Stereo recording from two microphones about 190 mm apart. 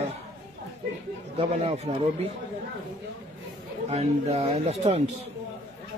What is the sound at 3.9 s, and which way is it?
Speech, 35° right (ahead or behind).